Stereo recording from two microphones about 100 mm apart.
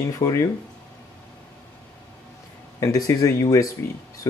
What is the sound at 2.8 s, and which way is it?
Speech, 35° left (ahead or behind).